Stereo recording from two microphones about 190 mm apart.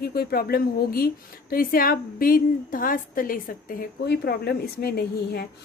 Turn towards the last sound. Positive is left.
turn(degrees=55)  # may be behind; listen again after turning